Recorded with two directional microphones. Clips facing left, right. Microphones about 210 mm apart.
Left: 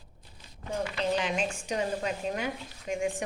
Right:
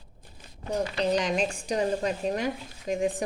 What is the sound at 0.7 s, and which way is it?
Speech, 40° right (ahead or behind).